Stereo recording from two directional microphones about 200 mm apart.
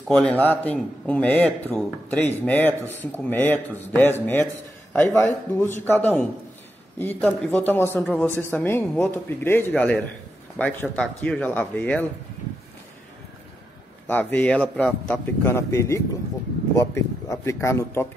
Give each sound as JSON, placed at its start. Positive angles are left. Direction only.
{"t": 0.1, "sound": "a man's voice", "side_deg": 5}
{"t": 14.0, "sound": "a man's voice", "side_deg": 10}